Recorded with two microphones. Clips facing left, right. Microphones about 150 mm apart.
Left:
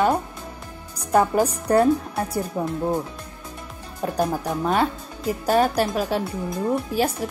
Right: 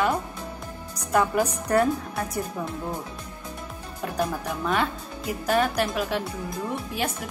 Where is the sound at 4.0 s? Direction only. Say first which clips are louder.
Left 4 dB; 35° left (ahead or behind).